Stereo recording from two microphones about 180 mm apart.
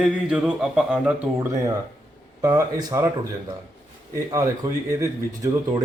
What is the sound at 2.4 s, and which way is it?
Speech, 20° right (ahead or behind).